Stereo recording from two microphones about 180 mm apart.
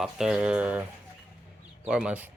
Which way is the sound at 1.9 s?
5° right (ahead or behind).